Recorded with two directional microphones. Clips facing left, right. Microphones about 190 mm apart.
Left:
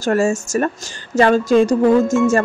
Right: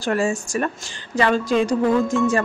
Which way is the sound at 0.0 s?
45° left (ahead or behind).